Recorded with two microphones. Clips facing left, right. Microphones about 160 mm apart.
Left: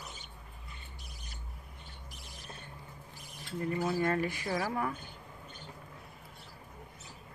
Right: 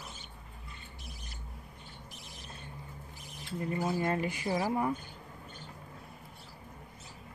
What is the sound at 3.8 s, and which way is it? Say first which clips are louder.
Speech: left 1 dB; 20° right (ahead or behind).